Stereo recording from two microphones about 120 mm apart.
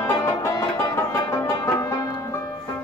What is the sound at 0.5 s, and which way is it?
Music, 25° left (ahead or behind).